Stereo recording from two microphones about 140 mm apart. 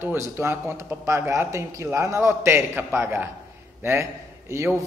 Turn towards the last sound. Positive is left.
turn(degrees=-20)  # may be behind; listen again after turning